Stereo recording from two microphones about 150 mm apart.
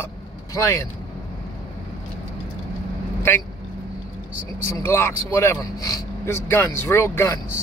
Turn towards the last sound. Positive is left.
turn(degrees=20)  # may be behind; listen again after turning